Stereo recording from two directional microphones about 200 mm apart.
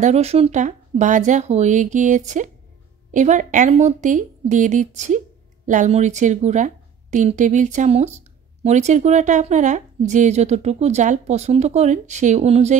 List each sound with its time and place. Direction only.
0.0 s a woman's voice: 30° right (ahead or behind)